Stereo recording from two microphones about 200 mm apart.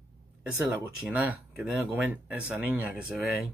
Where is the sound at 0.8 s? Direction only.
5° right (ahead or behind).